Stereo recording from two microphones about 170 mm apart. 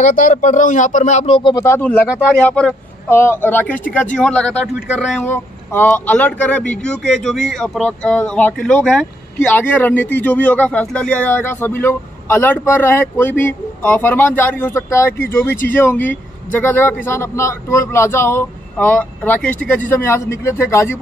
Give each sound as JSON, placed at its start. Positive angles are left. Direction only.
{"t": 0.0, "sound": "speech", "side_deg": 50}
{"t": 1.5, "sound": "speech", "side_deg": 15}